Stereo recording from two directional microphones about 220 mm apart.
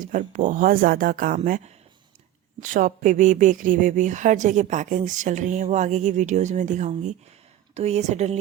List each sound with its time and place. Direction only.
0.0 s a woman's voice: 35° right (ahead or behind)